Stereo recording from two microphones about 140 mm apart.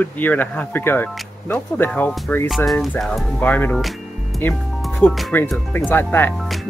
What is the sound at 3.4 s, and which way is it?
Speech, 10° left (ahead or behind).